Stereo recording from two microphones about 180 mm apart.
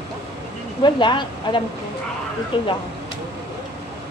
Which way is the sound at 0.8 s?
25° left (ahead or behind).